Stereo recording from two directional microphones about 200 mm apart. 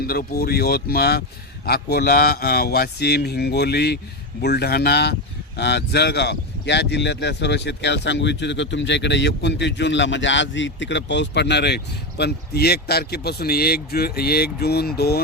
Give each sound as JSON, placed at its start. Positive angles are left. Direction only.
{"t": 0.1, "sound": "speech", "side_deg": 50}